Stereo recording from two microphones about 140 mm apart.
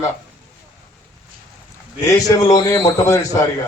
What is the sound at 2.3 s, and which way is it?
Speech, 25° left (ahead or behind).